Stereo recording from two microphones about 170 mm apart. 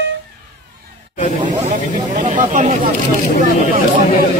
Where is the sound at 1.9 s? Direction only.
45° right (ahead or behind).